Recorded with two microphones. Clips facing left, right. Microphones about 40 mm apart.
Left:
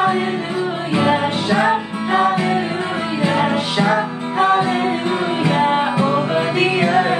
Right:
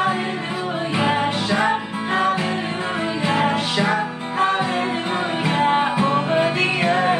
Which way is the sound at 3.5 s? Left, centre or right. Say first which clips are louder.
Left 3 dB; centre.